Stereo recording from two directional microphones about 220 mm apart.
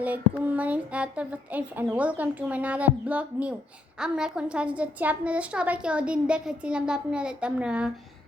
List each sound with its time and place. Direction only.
0.0 s a woman's voice: 5° right (ahead or behind)